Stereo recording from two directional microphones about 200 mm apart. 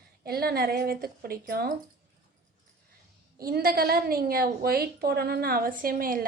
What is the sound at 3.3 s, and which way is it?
A woman's voice, 50° right (ahead or behind).